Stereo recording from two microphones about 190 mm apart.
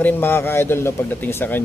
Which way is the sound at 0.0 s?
10° left (ahead or behind).